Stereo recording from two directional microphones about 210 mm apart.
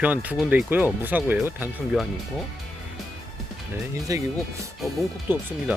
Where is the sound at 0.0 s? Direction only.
5° right (ahead or behind).